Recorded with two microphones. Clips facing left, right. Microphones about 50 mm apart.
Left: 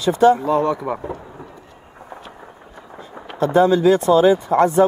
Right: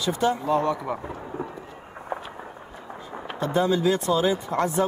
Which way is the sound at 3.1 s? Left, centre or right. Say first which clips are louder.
Left 8 dB; centre.